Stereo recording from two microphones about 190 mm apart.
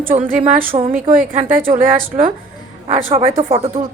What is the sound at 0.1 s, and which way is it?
Speech, 40° right (ahead or behind).